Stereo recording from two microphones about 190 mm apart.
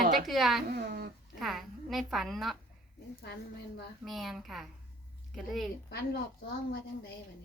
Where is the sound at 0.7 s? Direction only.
55° right (ahead or behind).